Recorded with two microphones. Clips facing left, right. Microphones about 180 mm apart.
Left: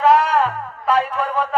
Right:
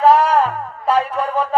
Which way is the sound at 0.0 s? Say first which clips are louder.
Right 2 dB; 35° right (ahead or behind).